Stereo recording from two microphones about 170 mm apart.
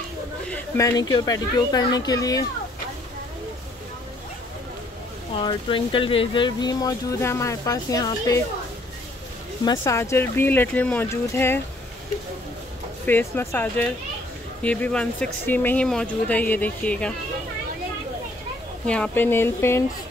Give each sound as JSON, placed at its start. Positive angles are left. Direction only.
{"t": 0.5, "sound": "speech", "side_deg": 15}
{"t": 5.4, "sound": "speech", "side_deg": 25}
{"t": 9.7, "sound": "speech", "side_deg": 15}
{"t": 13.0, "sound": "speech", "side_deg": 10}
{"t": 18.9, "sound": "speech", "side_deg": 10}